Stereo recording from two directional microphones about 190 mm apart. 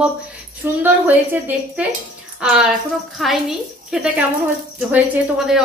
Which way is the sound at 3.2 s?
Centre (ahead or behind).